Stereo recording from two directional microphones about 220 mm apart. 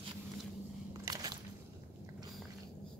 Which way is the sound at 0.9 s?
15° right (ahead or behind).